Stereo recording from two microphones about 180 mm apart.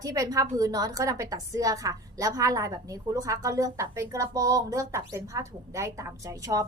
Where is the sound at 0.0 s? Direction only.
20° right (ahead or behind).